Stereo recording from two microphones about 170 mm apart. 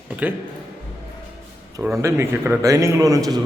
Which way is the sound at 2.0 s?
15° right (ahead or behind).